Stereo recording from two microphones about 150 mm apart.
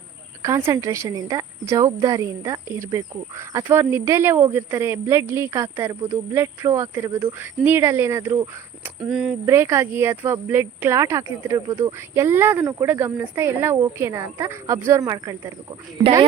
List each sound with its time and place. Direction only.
0.4 s a woman's voice: 20° right (ahead or behind)
9.0 s speech: 5° right (ahead or behind)
9.5 s speech: 15° right (ahead or behind)